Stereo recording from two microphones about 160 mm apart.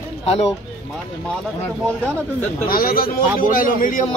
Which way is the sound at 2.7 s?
65° left (ahead or behind).